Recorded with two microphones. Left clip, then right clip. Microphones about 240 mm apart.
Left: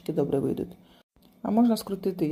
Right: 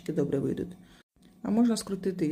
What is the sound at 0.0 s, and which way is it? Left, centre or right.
Speech, centre.